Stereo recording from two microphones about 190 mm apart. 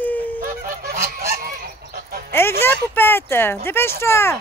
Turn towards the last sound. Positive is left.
turn(degrees=15)  # may be behind; listen again after turning